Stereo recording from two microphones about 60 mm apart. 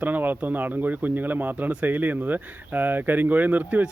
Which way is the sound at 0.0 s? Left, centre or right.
Right.